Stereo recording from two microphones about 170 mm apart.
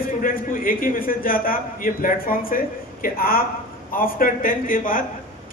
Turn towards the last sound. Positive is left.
turn(degrees=55)  # may be behind; listen again after turning